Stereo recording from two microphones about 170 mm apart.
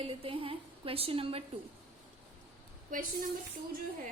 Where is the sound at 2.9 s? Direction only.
55° right (ahead or behind).